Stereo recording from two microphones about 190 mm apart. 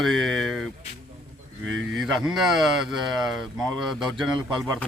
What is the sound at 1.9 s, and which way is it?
Speech, centre (ahead or behind).